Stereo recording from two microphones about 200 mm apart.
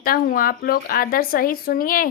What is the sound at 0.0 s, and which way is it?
Speech, 45° left (ahead or behind).